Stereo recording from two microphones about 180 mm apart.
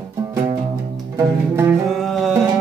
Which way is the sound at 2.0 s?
Centre (ahead or behind).